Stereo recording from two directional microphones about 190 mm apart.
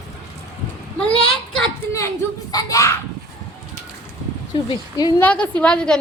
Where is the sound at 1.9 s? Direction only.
15° left (ahead or behind).